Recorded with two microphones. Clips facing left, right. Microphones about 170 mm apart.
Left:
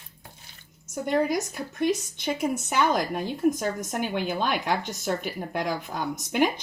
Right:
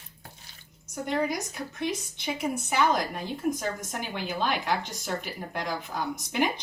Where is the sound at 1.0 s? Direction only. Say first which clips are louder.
Left 4 dB; 50° left (ahead or behind).